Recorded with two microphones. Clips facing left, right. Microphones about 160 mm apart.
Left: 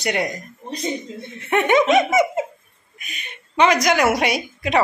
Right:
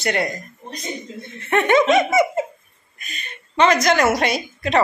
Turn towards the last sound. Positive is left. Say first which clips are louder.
# even
turn(degrees=10)  # may be behind; listen again after turning